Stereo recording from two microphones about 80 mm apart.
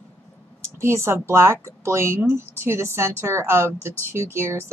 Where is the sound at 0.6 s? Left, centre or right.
Right.